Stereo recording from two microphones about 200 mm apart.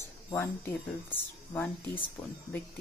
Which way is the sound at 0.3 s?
10° left (ahead or behind).